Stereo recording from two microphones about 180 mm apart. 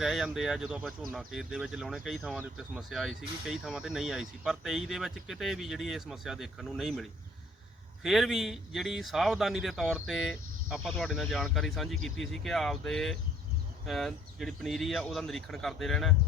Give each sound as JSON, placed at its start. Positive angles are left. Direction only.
{"t": 0.0, "sound": "speech", "side_deg": 0}
{"t": 8.0, "sound": "speech", "side_deg": 0}